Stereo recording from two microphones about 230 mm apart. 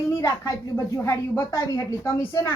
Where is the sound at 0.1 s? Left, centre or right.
Centre.